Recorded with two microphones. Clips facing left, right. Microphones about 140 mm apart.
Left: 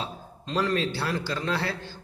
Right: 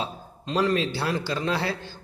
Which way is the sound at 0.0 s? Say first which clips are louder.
Right 3 dB; 15° right (ahead or behind).